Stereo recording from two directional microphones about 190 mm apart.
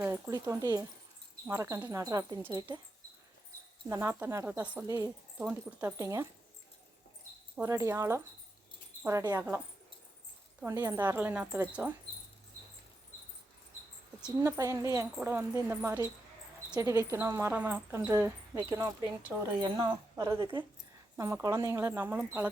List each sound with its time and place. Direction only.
0.0 s speech: 15° right (ahead or behind)
3.8 s speech: 15° right (ahead or behind)
7.5 s speech: 15° right (ahead or behind)
10.6 s speech: 15° right (ahead or behind)
14.3 s speech: 10° right (ahead or behind)